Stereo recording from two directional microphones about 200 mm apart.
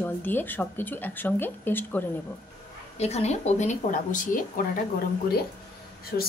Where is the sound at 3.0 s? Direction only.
30° left (ahead or behind).